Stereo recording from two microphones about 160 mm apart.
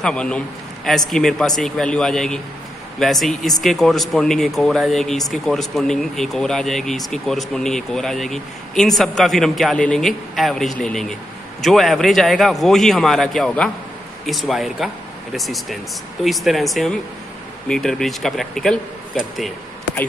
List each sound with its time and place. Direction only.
0.0 s a man's voice: 5° left (ahead or behind)